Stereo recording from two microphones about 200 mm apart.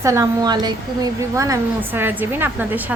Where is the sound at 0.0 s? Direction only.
15° right (ahead or behind).